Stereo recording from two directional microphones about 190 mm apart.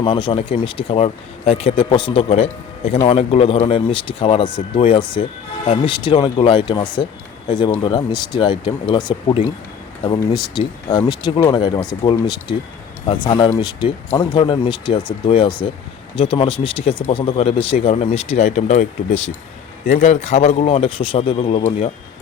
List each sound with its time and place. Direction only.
0.0 s speech: 25° left (ahead or behind)